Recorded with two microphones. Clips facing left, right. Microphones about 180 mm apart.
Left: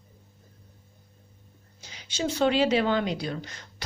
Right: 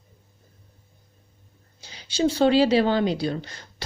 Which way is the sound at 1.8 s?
30° right (ahead or behind).